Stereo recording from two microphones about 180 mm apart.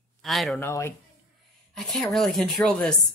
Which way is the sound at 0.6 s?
15° left (ahead or behind).